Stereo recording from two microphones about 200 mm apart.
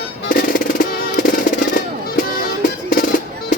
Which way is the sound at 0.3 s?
45° left (ahead or behind).